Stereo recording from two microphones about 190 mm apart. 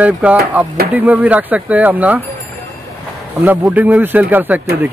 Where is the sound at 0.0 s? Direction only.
10° right (ahead or behind).